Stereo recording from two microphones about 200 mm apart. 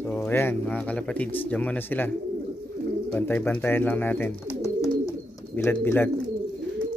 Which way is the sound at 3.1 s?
10° left (ahead or behind).